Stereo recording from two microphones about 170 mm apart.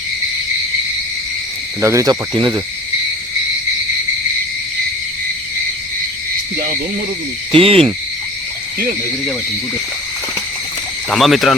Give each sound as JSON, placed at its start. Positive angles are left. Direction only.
{"t": 1.8, "sound": "speech", "side_deg": -15}
{"t": 7.5, "sound": "hoot", "side_deg": -35}
{"t": 11.1, "sound": "speech", "side_deg": 0}